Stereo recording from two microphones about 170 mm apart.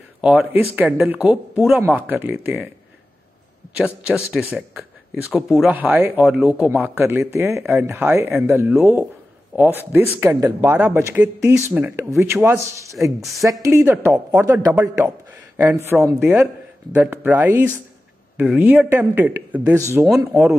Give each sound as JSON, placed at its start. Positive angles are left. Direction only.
{"t": 0.2, "sound": "a man's voice", "side_deg": -5}
{"t": 3.7, "sound": "a man's voice", "side_deg": -5}
{"t": 13.2, "sound": "speech", "side_deg": 0}
{"t": 13.5, "sound": "a man's voice", "side_deg": -20}